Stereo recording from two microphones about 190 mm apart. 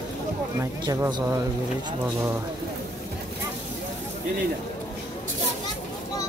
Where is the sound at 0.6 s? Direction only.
15° right (ahead or behind).